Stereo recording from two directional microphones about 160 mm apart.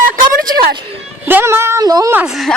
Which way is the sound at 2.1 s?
5° right (ahead or behind).